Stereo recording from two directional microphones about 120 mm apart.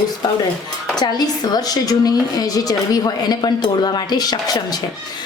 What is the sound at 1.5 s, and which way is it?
A woman's voice, 30° left (ahead or behind).